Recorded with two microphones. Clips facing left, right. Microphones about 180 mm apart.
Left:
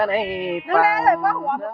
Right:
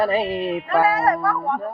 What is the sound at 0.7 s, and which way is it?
Speech, 90° left.